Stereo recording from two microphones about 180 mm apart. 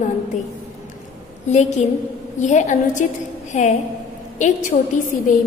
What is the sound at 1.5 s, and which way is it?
A woman's voice, 40° left (ahead or behind).